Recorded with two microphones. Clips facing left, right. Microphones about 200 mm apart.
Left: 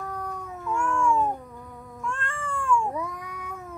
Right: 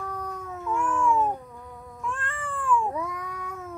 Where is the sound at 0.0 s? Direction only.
Centre (ahead or behind).